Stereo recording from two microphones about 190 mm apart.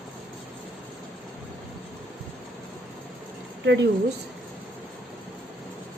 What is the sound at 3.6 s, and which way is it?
Speech, 65° right (ahead or behind).